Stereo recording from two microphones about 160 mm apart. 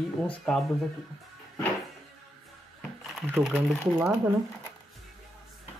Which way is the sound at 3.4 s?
5° right (ahead or behind).